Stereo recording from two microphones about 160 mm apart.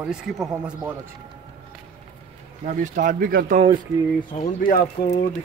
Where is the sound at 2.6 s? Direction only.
55° right (ahead or behind).